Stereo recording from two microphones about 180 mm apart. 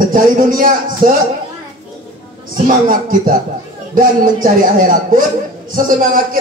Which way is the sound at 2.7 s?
50° right (ahead or behind).